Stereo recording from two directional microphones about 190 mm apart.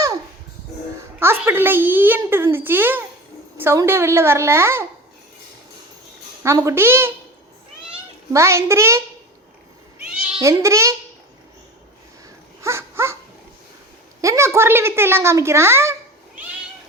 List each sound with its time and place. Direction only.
1.2 s a child's voice: 15° right (ahead or behind)
6.4 s a child's voice: 15° right (ahead or behind)
8.3 s a child's voice: 15° right (ahead or behind)
10.4 s a child's voice: 15° right (ahead or behind)
12.6 s dog: 15° right (ahead or behind)
14.2 s a woman's voice: 15° right (ahead or behind)